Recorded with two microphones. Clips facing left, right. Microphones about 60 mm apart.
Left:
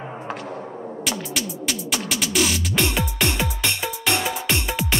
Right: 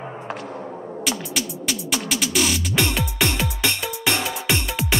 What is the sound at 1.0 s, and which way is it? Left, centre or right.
Music, centre.